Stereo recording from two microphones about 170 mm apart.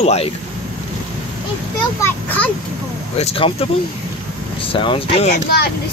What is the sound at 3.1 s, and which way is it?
Speech, 35° left (ahead or behind).